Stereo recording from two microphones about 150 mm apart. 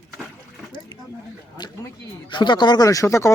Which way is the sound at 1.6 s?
30° left (ahead or behind).